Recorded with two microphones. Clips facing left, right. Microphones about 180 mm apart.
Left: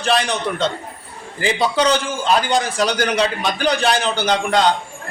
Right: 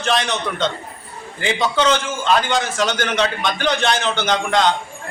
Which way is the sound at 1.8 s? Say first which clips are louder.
Left 1 dB; 35° left (ahead or behind).